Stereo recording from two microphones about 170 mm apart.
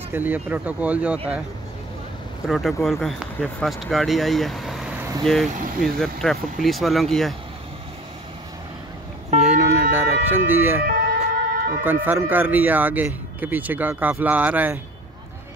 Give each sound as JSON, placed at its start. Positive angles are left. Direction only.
{"t": 0.1, "sound": "a man's voice", "side_deg": -10}
{"t": 2.4, "sound": "speech", "side_deg": 0}
{"t": 9.6, "sound": "emergency vehicle", "side_deg": -10}
{"t": 10.9, "sound": "ambulance", "side_deg": -60}
{"t": 11.8, "sound": "a man's voice", "side_deg": -10}